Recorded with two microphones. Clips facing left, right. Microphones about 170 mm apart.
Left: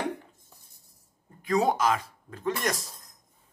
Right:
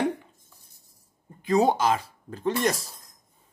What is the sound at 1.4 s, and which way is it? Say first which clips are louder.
Speech: right 3 dB; 25° right (ahead or behind).